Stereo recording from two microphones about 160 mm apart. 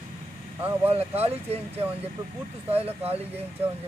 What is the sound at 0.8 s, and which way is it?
Speech, 40° right (ahead or behind).